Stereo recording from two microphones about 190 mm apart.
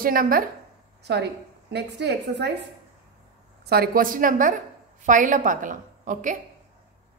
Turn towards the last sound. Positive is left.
turn(degrees=-45)  # may be behind; listen again after turning